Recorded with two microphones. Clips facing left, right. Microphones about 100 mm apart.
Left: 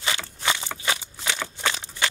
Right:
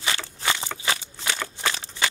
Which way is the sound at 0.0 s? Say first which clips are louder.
Even; centre (ahead or behind).